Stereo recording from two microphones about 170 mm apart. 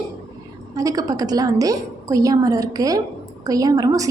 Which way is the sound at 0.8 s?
20° right (ahead or behind).